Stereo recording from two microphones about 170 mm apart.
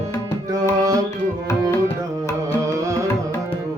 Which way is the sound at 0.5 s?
20° right (ahead or behind).